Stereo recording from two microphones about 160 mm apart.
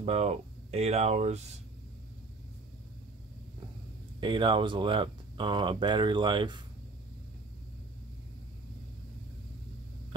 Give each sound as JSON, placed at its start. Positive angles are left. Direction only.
{"t": 0.0, "sound": "speech", "side_deg": -40}
{"t": 4.2, "sound": "speech", "side_deg": -30}